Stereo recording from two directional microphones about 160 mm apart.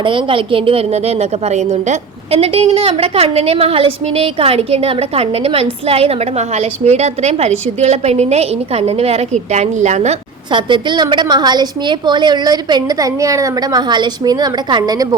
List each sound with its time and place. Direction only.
0.0 s a woman's voice: 30° right (ahead or behind); by 10.2 s 45° right (ahead or behind)
10.5 s a woman's voice: 30° right (ahead or behind)